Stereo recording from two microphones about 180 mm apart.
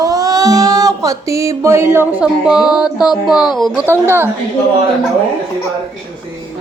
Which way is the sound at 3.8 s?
15° right (ahead or behind).